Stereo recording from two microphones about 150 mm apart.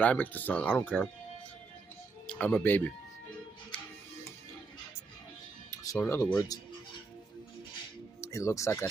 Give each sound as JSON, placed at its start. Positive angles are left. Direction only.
{"t": 0.0, "sound": "speech", "side_deg": 10}
{"t": 2.2, "sound": "speech", "side_deg": 10}
{"t": 5.7, "sound": "speech", "side_deg": 20}
{"t": 8.2, "sound": "speech", "side_deg": 20}